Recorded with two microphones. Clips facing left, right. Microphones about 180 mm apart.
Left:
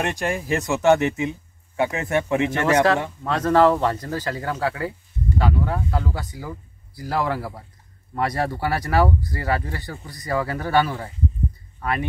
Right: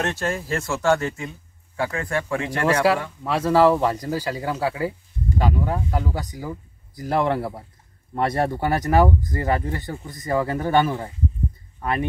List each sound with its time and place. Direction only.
0.0 s speech: 15° left (ahead or behind)
3.3 s speech: 10° right (ahead or behind)